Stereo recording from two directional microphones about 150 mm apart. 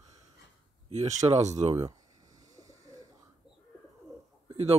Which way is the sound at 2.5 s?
20° right (ahead or behind).